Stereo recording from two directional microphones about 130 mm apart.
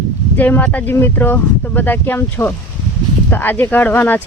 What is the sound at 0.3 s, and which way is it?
Speech, 15° left (ahead or behind).